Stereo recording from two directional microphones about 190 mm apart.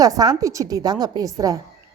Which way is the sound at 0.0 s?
20° right (ahead or behind).